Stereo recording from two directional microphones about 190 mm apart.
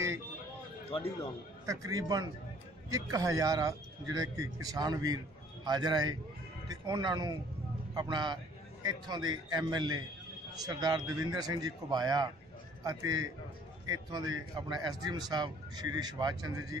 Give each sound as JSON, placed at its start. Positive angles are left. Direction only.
{"t": 1.7, "sound": "speech", "side_deg": -20}